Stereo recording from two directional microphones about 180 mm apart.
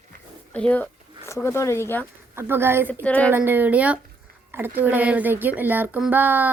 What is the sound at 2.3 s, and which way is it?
Speech, 15° right (ahead or behind).